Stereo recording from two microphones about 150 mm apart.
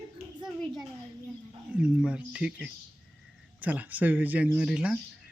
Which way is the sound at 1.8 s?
5° right (ahead or behind).